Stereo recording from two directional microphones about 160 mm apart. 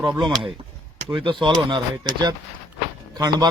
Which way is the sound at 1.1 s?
30° right (ahead or behind).